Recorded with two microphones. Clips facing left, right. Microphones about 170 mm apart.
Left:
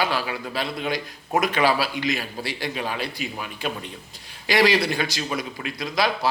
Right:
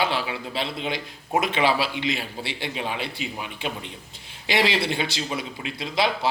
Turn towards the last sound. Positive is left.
turn(degrees=-25)  # may be behind; listen again after turning